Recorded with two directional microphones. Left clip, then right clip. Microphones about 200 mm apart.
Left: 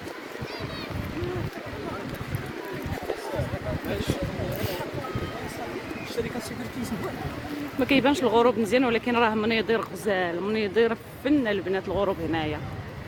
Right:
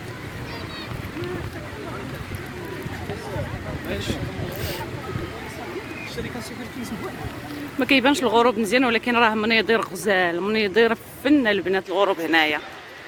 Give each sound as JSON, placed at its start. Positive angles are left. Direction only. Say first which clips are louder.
{"t": 7.8, "sound": "speech", "louder": "right 4 dB", "side_deg": -10}